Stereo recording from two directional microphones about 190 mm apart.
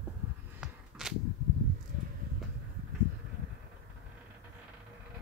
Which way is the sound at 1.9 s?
45° right (ahead or behind).